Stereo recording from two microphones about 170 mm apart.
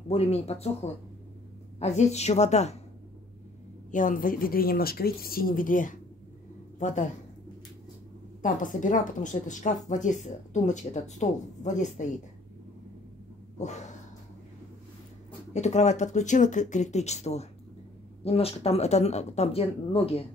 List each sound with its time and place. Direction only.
0.1 s speech: 35° left (ahead or behind)
3.9 s speech: 50° left (ahead or behind)
8.7 s speech: 50° left (ahead or behind)
13.6 s a sound: 45° left (ahead or behind)
15.5 s speech: 40° left (ahead or behind)